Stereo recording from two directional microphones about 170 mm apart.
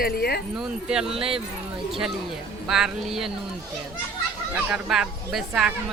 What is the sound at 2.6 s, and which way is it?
Speech, 5° right (ahead or behind).